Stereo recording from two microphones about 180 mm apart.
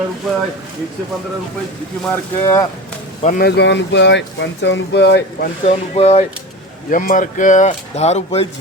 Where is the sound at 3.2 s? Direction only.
45° left (ahead or behind).